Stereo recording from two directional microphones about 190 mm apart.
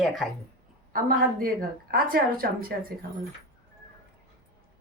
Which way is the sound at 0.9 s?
50° right (ahead or behind).